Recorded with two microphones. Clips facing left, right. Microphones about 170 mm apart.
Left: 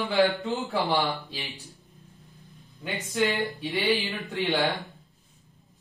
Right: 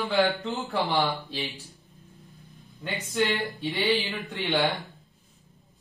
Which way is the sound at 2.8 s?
Centre (ahead or behind).